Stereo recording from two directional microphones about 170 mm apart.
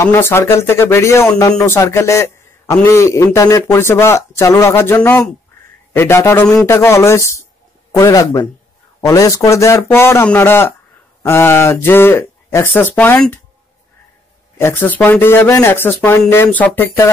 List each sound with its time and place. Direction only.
0.0 s a man's voice: 15° left (ahead or behind)
14.6 s speech: 10° left (ahead or behind)